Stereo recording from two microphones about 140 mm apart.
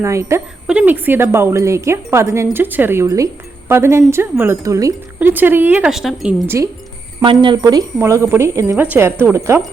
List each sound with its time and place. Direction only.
0.0 s speech: 20° right (ahead or behind)
0.7 s speech: 10° right (ahead or behind)
5.3 s speech: 15° right (ahead or behind)
5.9 s speech: centre (ahead or behind)
7.2 s speech: 35° right (ahead or behind)